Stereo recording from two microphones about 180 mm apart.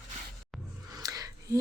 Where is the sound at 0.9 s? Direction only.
20° right (ahead or behind).